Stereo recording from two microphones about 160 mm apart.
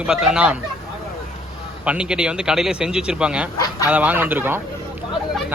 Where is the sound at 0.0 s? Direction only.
5° right (ahead or behind).